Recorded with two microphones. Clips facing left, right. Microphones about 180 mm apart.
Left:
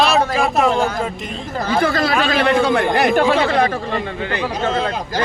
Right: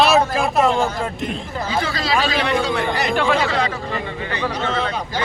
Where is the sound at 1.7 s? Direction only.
55° left (ahead or behind).